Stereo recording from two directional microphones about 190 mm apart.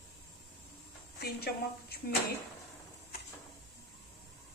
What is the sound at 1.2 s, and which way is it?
Speech, 55° left (ahead or behind).